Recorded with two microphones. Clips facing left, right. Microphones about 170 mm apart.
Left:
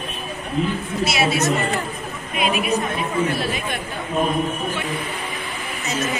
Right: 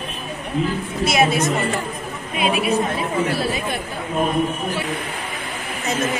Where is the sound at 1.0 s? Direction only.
50° right (ahead or behind).